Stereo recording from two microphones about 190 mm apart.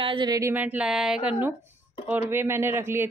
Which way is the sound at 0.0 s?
25° right (ahead or behind).